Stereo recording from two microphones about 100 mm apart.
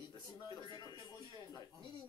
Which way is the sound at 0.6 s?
45° left (ahead or behind).